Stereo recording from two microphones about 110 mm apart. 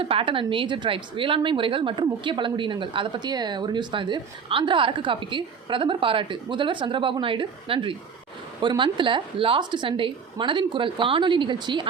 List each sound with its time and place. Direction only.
0.0 s speech: 55° right (ahead or behind)